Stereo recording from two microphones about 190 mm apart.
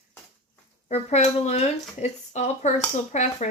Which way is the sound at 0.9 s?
35° left (ahead or behind).